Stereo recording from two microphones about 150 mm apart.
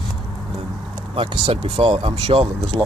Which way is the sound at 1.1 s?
35° right (ahead or behind).